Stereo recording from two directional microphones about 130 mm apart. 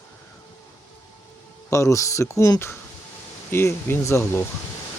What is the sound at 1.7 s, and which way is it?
Speech, 25° left (ahead or behind).